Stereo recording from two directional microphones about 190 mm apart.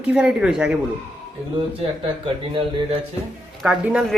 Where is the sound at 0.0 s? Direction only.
5° right (ahead or behind).